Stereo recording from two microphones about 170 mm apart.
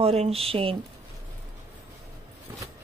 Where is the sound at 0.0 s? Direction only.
35° right (ahead or behind).